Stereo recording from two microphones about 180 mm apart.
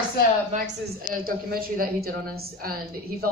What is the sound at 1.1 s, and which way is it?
A woman's voice, 55° right (ahead or behind).